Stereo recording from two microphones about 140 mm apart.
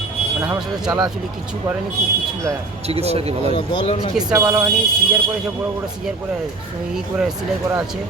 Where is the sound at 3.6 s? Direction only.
40° left (ahead or behind).